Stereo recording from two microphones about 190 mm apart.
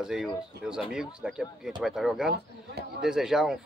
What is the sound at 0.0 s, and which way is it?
Speech, 5° right (ahead or behind).